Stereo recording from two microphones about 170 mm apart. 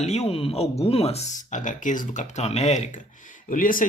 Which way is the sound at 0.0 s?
40° left (ahead or behind).